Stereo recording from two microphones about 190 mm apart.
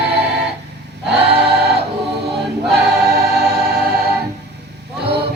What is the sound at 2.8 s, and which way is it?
Choir, 55° right (ahead or behind).